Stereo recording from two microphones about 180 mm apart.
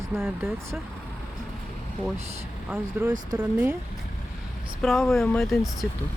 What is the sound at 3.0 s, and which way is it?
Speech, 10° right (ahead or behind).